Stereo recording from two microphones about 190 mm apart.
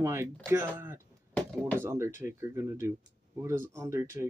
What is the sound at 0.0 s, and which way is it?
Speech, 15° right (ahead or behind).